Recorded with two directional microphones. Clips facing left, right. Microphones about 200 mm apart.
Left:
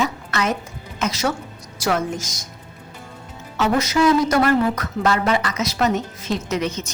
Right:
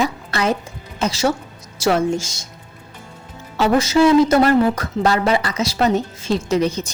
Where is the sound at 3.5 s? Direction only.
30° right (ahead or behind).